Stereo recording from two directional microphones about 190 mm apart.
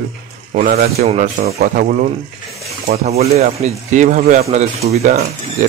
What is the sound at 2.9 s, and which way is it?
Speech, 35° right (ahead or behind).